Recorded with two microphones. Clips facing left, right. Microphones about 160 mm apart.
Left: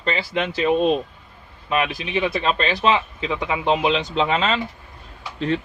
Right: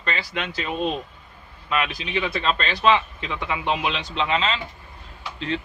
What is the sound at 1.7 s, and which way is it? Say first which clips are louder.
Speech: left 3 dB; 25° left (ahead or behind).